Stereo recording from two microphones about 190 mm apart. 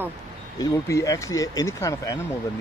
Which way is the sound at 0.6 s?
20° left (ahead or behind).